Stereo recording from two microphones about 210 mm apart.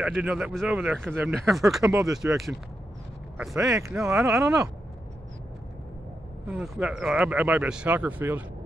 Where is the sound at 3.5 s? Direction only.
15° right (ahead or behind).